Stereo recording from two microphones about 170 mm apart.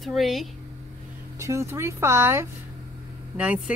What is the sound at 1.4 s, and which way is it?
Speech, 15° right (ahead or behind).